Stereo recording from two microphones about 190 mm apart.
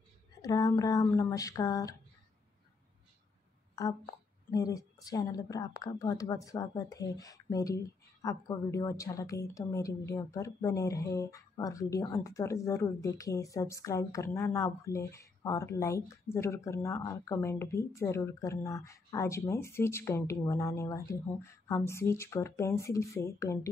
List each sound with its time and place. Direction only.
0.4 s speech: 20° left (ahead or behind)
3.7 s a woman's voice: 20° left (ahead or behind)